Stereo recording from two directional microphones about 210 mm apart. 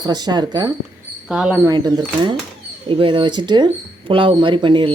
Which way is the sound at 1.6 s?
20° right (ahead or behind).